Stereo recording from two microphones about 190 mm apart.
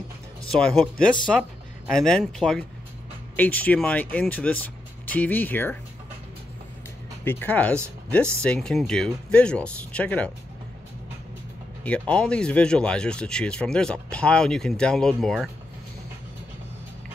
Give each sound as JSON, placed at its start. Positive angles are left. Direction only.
{"t": 0.5, "sound": "speech", "side_deg": 5}
{"t": 7.2, "sound": "speech", "side_deg": 10}
{"t": 11.8, "sound": "speech", "side_deg": 5}